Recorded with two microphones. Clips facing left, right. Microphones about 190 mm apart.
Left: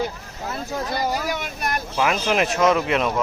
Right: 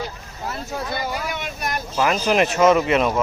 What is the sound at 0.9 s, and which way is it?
Speech, 40° left (ahead or behind).